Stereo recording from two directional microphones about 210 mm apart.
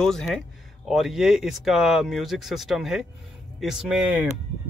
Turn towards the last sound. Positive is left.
turn(degrees=-5)  # may be behind; listen again after turning